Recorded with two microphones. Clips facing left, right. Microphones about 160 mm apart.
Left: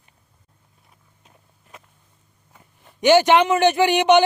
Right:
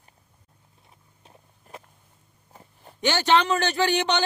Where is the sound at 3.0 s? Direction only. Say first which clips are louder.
Left 7 dB; 15° left (ahead or behind).